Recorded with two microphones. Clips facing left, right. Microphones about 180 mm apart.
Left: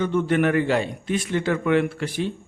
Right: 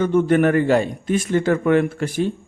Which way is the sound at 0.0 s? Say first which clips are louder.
Right 5 dB; 45° right (ahead or behind).